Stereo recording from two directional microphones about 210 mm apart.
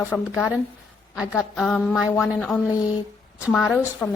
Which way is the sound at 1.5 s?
5° left (ahead or behind).